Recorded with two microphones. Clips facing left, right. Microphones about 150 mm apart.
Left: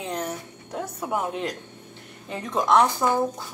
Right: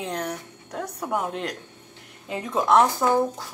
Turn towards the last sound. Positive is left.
turn(degrees=0)  # may be behind; listen again after turning